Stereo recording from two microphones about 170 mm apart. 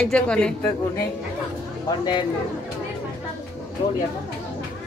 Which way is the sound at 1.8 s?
25° left (ahead or behind).